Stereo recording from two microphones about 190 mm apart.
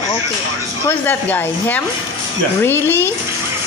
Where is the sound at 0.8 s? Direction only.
10° left (ahead or behind).